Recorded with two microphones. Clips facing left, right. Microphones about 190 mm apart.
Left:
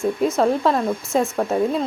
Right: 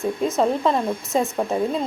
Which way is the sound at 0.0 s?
Centre (ahead or behind).